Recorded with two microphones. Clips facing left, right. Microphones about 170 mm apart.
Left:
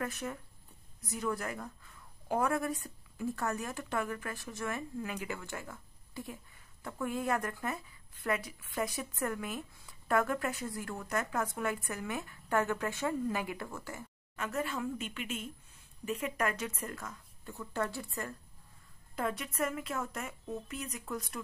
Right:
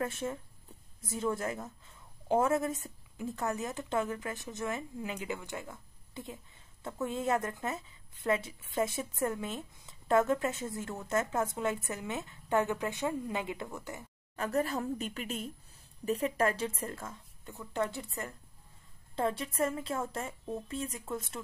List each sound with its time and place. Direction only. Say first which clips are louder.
0.0 s a woman's voice: right 3 dB; 25° right (ahead or behind)
14.3 s a woman's voice: right 4 dB; 35° right (ahead or behind)